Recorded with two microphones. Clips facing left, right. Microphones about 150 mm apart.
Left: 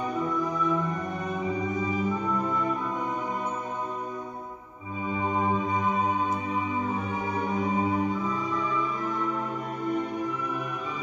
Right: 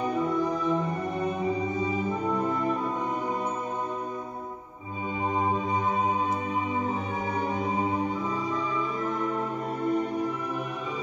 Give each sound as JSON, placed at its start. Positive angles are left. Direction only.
{"t": 0.3, "sound": "music", "side_deg": -30}
{"t": 5.4, "sound": "music", "side_deg": -35}